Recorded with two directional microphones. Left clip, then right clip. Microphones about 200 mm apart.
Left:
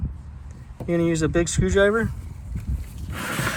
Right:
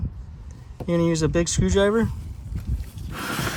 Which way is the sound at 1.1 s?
40° right (ahead or behind).